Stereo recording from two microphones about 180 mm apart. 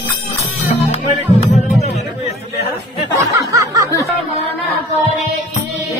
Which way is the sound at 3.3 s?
15° right (ahead or behind).